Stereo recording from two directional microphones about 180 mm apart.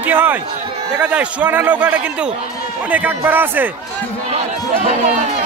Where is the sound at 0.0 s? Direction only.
10° right (ahead or behind).